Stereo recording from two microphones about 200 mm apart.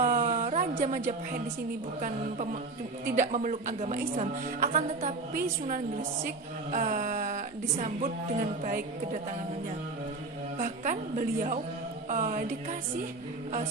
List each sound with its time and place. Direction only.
0.0 s a sound: 40° right (ahead or behind)
2.0 s speech: 40° right (ahead or behind)
6.7 s speech: 40° right (ahead or behind)
10.6 s speech: 40° right (ahead or behind)